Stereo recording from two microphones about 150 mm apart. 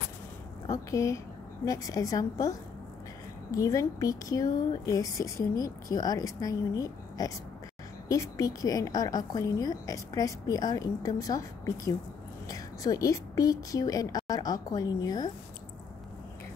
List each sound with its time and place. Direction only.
0.7 s a woman's voice: 20° left (ahead or behind)
3.5 s speech: 20° left (ahead or behind)